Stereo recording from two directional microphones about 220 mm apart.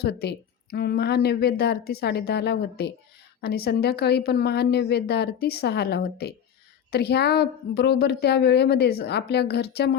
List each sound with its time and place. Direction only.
0.0 s a woman's voice: 45° left (ahead or behind)